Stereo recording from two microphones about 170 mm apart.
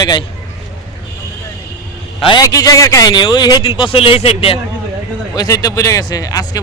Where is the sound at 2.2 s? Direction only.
25° left (ahead or behind).